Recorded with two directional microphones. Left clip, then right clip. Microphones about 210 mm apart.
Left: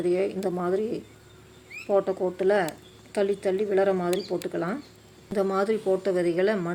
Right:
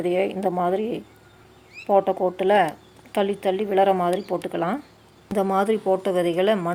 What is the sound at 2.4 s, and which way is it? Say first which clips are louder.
A woman's voice: right 4 dB; 15° right (ahead or behind).